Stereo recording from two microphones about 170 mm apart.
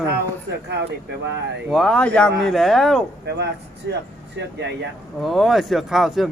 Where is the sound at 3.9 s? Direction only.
90° right.